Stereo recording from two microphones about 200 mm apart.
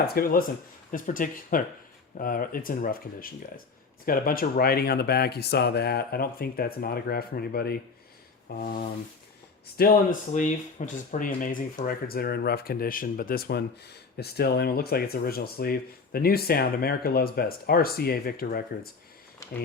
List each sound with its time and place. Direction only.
0.1 s speech: 45° left (ahead or behind)
9.7 s speech: 45° left (ahead or behind)
19.4 s a sound: 15° left (ahead or behind)